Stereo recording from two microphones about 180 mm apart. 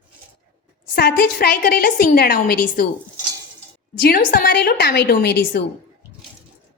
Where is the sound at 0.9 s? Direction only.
60° left (ahead or behind).